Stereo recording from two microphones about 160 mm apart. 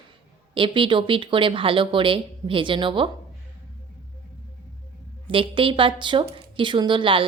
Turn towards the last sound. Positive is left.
turn(degrees=-30)  # may be behind; listen again after turning